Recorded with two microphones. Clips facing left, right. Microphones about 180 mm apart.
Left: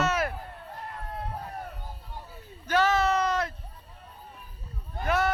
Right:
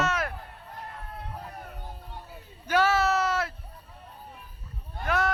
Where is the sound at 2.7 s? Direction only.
10° right (ahead or behind).